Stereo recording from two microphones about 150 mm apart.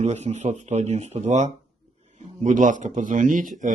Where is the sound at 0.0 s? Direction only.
45° right (ahead or behind).